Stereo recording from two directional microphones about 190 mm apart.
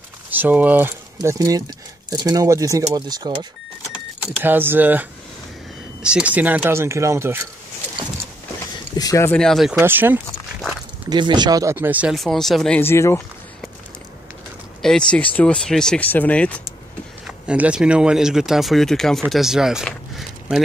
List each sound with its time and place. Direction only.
0.3 s speech: 10° right (ahead or behind)
4.4 s speech: 10° right (ahead or behind)
6.0 s speech: 5° right (ahead or behind)
8.9 s a sound: 20° left (ahead or behind)
9.4 s speech: centre (ahead or behind)
9.8 s speech: 10° right (ahead or behind)
11.1 s speech: 25° right (ahead or behind); by 13.2 s 15° left (ahead or behind)
14.8 s speech: 5° left (ahead or behind)
17.5 s speech: 5° right (ahead or behind)